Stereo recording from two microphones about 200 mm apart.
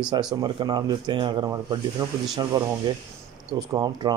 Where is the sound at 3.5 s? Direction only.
20° right (ahead or behind).